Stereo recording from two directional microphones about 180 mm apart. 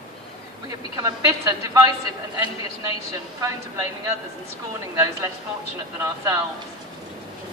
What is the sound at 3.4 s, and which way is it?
A woman's voice, 15° right (ahead or behind).